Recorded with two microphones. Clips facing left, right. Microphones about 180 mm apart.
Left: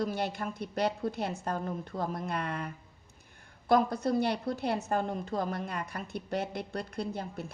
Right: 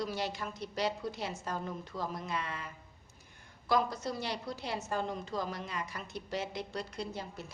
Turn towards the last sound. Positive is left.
turn(degrees=55)  # may be behind; listen again after turning